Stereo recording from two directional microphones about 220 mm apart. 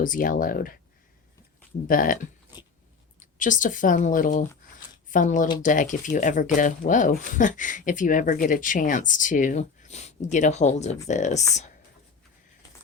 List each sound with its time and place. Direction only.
0.0 s speech: 40° left (ahead or behind)
1.9 s speech: 40° left (ahead or behind)
3.2 s speech: 35° left (ahead or behind)